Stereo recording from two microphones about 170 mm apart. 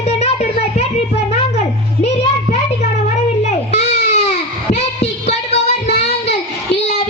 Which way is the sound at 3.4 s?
40° left (ahead or behind).